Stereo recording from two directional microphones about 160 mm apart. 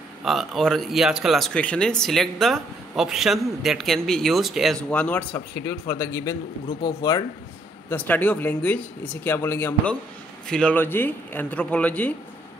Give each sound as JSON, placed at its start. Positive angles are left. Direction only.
{"t": 0.2, "sound": "speech", "side_deg": 0}
{"t": 7.9, "sound": "speech", "side_deg": 10}